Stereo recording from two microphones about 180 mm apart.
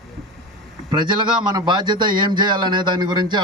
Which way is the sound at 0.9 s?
25° right (ahead or behind).